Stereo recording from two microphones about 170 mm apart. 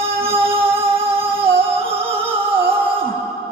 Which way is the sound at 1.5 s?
15° right (ahead or behind).